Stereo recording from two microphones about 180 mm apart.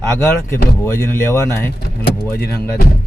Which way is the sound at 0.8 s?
15° left (ahead or behind).